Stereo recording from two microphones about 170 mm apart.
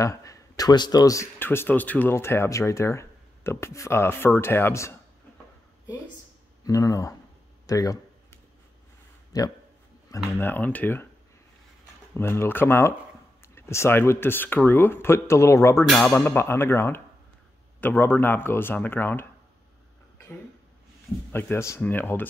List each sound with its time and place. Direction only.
0.0 s speech: 20° left (ahead or behind)
6.6 s speech: 20° left (ahead or behind)
9.3 s speech: 20° left (ahead or behind)
12.1 s speech: 15° left (ahead or behind)
15.9 s speech: 5° left (ahead or behind)
21.3 s speech: 10° left (ahead or behind)